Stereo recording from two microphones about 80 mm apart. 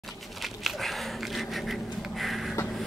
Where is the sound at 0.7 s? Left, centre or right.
Centre.